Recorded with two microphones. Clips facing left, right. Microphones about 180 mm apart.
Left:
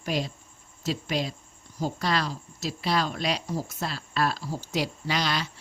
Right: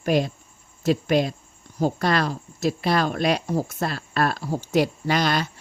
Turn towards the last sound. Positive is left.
turn(degrees=-50)  # may be behind; listen again after turning